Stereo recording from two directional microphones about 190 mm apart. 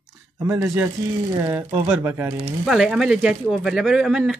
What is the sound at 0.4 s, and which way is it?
Speech, 15° right (ahead or behind).